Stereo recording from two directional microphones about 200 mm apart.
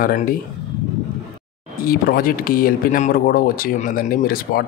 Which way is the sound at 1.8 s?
45° left (ahead or behind).